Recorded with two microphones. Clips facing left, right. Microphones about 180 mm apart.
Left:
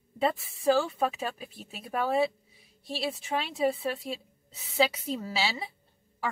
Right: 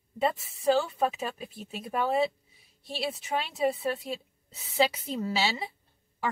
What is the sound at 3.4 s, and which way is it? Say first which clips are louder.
Speech: even; centre (ahead or behind).